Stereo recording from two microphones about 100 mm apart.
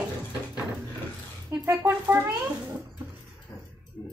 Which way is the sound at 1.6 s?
20° right (ahead or behind).